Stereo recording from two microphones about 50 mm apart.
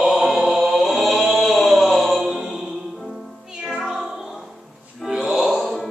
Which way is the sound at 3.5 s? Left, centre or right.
Centre.